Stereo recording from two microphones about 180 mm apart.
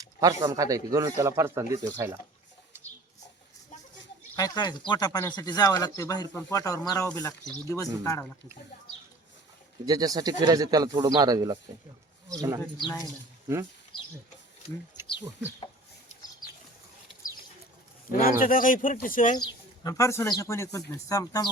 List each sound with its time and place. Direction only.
0.0 s speech: 20° right (ahead or behind)
4.4 s speech: 20° left (ahead or behind)
9.8 s speech: 20° right (ahead or behind)
18.1 s speech: 50° left (ahead or behind)
19.4 s speech: 20° left (ahead or behind)